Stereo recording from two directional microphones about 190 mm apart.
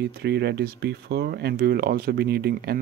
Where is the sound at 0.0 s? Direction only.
60° right (ahead or behind).